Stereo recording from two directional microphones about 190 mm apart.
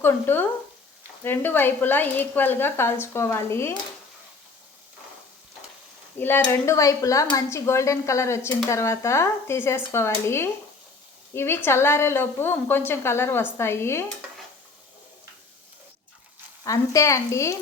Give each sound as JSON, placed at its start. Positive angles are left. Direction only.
{"t": 0.0, "sound": "speech", "side_deg": 10}
{"t": 6.1, "sound": "speech", "side_deg": 10}
{"t": 16.6, "sound": "speech", "side_deg": 15}